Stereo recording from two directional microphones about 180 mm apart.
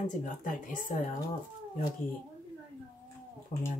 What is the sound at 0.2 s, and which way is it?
Speech, 45° left (ahead or behind).